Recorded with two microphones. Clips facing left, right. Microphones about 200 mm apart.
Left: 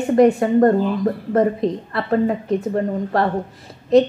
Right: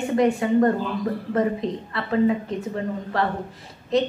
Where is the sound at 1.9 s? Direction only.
45° left (ahead or behind).